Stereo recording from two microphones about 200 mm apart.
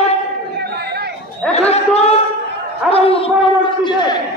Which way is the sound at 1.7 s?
30° left (ahead or behind).